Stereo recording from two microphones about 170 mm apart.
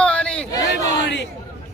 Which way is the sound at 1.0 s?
90° left.